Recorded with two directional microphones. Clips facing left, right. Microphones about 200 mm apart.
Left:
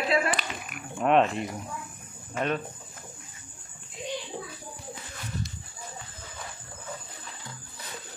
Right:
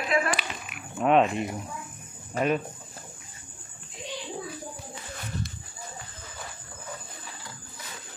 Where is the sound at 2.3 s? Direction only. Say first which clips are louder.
Right 3 dB; 35° right (ahead or behind).